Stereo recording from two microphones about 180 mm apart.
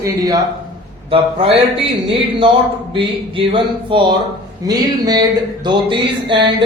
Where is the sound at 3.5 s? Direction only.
25° right (ahead or behind).